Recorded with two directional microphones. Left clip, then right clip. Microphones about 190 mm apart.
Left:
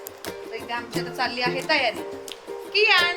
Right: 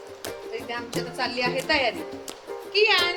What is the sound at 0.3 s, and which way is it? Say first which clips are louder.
Speech: left 1 dB; 5° right (ahead or behind).